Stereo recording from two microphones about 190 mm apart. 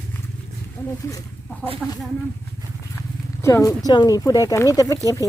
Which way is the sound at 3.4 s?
15° left (ahead or behind).